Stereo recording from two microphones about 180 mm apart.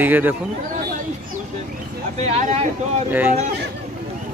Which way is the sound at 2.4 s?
35° right (ahead or behind).